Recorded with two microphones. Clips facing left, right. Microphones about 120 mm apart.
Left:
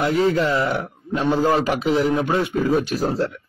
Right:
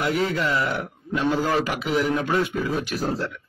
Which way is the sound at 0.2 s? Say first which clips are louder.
Left 5 dB; 25° left (ahead or behind).